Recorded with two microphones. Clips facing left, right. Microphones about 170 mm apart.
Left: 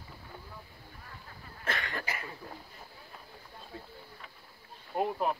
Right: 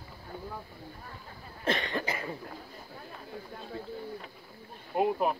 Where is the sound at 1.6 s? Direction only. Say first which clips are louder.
Right 6 dB; 25° right (ahead or behind).